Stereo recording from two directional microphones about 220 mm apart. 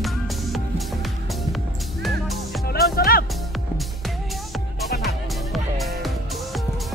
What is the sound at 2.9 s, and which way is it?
Music, 40° left (ahead or behind).